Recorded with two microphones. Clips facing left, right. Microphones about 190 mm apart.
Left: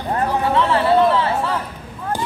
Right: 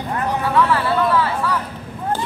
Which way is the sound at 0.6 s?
25° left (ahead or behind).